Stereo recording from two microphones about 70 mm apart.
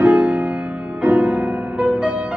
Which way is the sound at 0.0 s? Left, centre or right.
Centre.